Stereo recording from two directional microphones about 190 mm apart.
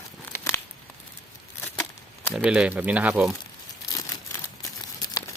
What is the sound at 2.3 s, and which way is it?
Speech, 5° right (ahead or behind).